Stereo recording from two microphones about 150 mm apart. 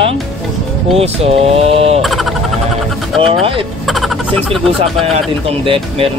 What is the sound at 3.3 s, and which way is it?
Speech, 35° right (ahead or behind).